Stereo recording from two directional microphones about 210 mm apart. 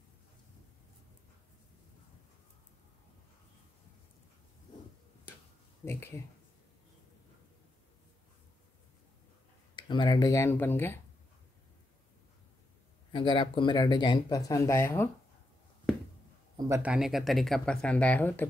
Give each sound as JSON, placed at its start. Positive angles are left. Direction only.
{"t": 5.9, "sound": "speech", "side_deg": 10}
{"t": 9.8, "sound": "speech", "side_deg": 20}
{"t": 13.1, "sound": "speech", "side_deg": 25}
{"t": 16.5, "sound": "speech", "side_deg": -15}